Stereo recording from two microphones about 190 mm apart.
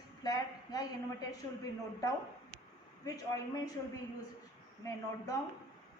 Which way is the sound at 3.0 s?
20° left (ahead or behind).